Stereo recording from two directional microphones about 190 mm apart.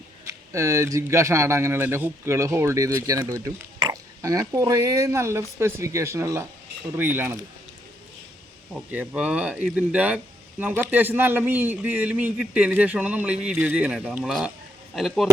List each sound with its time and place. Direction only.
0.3 s a man's voice: 15° right (ahead or behind)
8.7 s a man's voice: 5° right (ahead or behind)